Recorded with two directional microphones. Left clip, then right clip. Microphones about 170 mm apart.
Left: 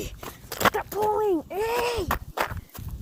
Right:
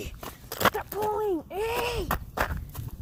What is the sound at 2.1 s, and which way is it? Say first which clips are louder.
Sigh: left 2 dB; 30° right (ahead or behind).